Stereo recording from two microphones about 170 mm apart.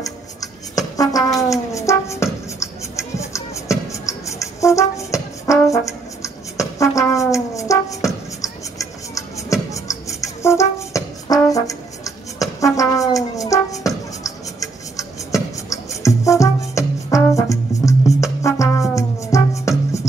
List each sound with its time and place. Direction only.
0.0 s a sound: 20° left (ahead or behind)
2.6 s music: 15° left (ahead or behind)
11.2 s brass instrument: 20° left (ahead or behind)